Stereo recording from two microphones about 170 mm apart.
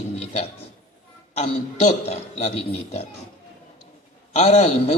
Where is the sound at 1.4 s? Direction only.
40° left (ahead or behind).